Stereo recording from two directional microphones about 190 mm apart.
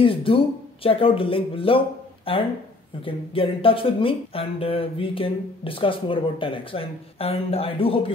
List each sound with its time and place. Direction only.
0.0 s speech: 30° left (ahead or behind)